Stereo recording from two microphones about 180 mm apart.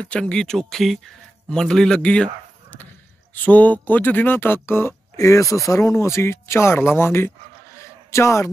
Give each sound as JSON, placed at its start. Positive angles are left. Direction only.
{"t": 0.0, "sound": "speech", "side_deg": 5}
{"t": 3.3, "sound": "speech", "side_deg": 10}